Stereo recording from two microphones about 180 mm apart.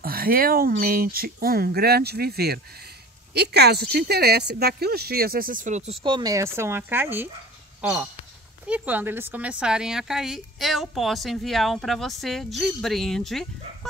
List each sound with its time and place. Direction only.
0.0 s speech: 55° right (ahead or behind); by 5.9 s 40° right (ahead or behind)
6.0 s a woman's voice: 25° right (ahead or behind); by 13.5 s centre (ahead or behind)